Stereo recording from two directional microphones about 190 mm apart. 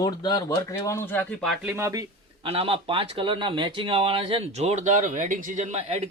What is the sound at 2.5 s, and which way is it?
Speech, 30° right (ahead or behind).